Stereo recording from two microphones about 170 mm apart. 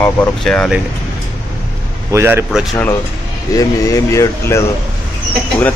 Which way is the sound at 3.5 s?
20° left (ahead or behind).